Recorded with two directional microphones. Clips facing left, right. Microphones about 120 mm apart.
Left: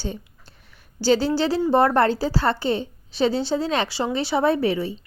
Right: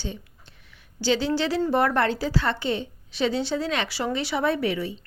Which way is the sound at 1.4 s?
30° left (ahead or behind).